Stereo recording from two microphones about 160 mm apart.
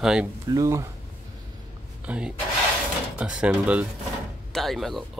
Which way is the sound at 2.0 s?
5° right (ahead or behind).